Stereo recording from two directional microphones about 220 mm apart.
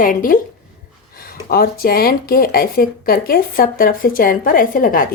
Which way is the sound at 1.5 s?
45° left (ahead or behind).